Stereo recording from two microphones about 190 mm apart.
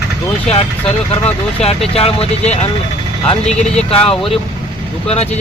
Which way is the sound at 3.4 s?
5° left (ahead or behind).